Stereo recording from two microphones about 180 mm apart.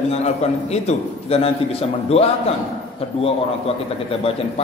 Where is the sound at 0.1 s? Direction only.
35° left (ahead or behind).